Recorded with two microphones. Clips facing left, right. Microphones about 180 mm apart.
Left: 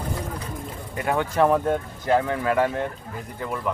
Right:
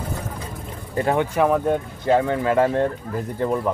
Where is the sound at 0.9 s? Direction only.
30° right (ahead or behind).